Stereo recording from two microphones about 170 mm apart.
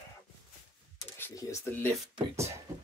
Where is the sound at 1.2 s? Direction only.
15° left (ahead or behind).